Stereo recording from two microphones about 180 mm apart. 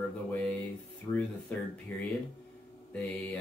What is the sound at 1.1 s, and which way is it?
Speech, 20° left (ahead or behind).